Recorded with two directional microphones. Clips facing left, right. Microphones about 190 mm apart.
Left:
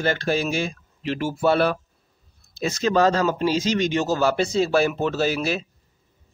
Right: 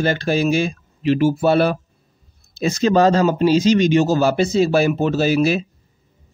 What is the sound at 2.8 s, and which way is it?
Speech, 20° right (ahead or behind).